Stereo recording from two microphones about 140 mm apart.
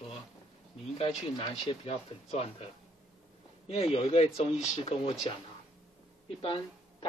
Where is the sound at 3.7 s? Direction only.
45° left (ahead or behind).